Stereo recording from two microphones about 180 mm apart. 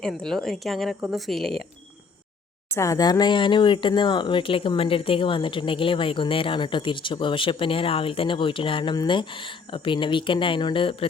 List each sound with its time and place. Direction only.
0.0 s speech: centre (ahead or behind)
2.7 s speech: 15° left (ahead or behind)